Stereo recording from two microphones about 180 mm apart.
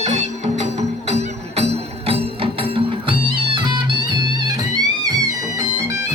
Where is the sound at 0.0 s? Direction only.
40° right (ahead or behind); by 6.0 s 20° right (ahead or behind).